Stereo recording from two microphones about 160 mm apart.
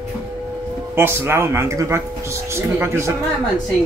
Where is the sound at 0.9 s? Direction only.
15° right (ahead or behind).